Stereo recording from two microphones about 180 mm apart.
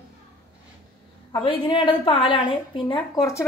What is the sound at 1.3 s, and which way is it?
A woman's voice, 30° left (ahead or behind).